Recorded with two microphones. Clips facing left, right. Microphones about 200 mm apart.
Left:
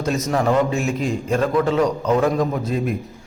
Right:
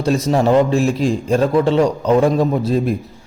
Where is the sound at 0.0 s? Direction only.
30° right (ahead or behind).